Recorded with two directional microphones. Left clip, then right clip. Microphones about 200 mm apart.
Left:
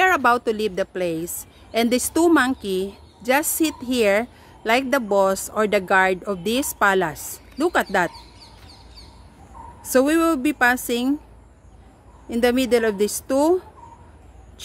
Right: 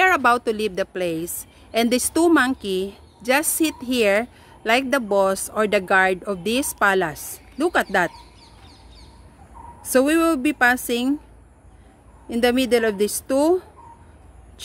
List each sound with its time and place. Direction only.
0.0 s a woman's voice: 5° right (ahead or behind)
8.1 s chicken: 45° left (ahead or behind)
9.8 s a woman's voice: 5° right (ahead or behind)
12.3 s a woman's voice: 10° right (ahead or behind)